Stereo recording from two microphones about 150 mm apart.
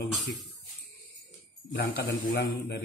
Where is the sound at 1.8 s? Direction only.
80° left.